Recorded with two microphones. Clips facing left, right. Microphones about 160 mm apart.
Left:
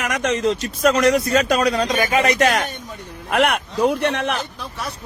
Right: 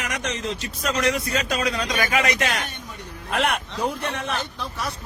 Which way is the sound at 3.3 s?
65° left (ahead or behind).